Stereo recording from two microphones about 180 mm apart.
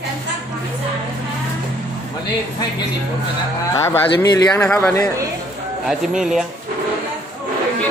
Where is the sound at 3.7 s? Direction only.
15° left (ahead or behind).